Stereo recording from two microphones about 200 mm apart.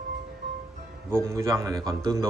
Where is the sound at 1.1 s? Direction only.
15° right (ahead or behind).